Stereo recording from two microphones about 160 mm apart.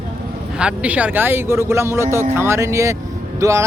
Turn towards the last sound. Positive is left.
turn(degrees=-20)  # may be behind; listen again after turning